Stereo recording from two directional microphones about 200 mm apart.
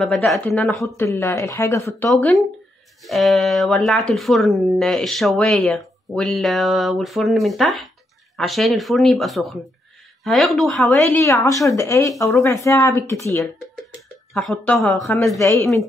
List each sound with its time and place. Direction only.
0.0 s speech: centre (ahead or behind)
2.0 s speech: centre (ahead or behind)
11.1 s speech: 10° left (ahead or behind)
15.3 s speech: 15° left (ahead or behind)